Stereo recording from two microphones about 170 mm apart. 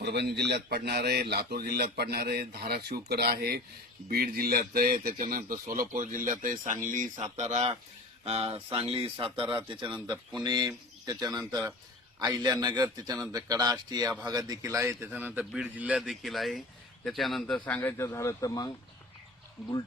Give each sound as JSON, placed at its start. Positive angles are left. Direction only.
{"t": 0.0, "sound": "speech", "side_deg": -75}
{"t": 9.9, "sound": "a man's voice", "side_deg": 0}
{"t": 10.4, "sound": "a man's voice", "side_deg": -25}